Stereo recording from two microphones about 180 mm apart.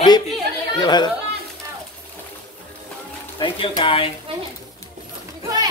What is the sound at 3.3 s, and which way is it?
Speech, 30° left (ahead or behind).